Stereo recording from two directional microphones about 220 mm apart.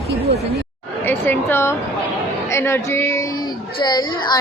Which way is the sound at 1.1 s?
10° left (ahead or behind).